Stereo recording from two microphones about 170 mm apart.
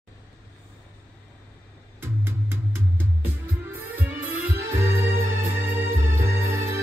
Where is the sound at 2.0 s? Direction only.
15° right (ahead or behind).